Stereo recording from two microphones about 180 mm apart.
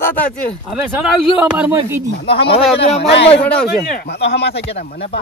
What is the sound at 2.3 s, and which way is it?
Speech, 65° left (ahead or behind).